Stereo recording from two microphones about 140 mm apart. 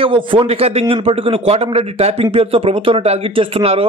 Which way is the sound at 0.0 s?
40° right (ahead or behind).